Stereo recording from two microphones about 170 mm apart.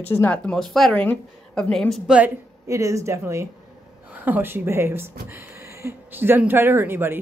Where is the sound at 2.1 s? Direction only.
15° right (ahead or behind).